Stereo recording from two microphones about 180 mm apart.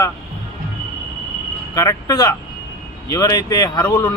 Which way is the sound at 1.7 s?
20° left (ahead or behind).